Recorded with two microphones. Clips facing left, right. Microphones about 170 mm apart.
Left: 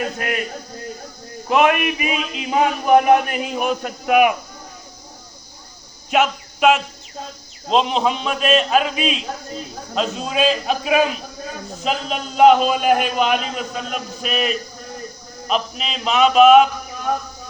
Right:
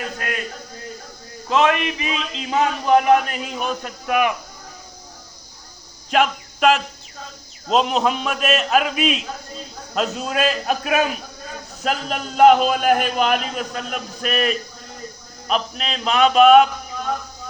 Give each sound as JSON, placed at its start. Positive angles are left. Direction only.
{"t": 0.2, "sound": "a man's voice", "side_deg": 20}
{"t": 1.5, "sound": "a man's voice", "side_deg": 15}
{"t": 6.1, "sound": "a man's voice", "side_deg": 5}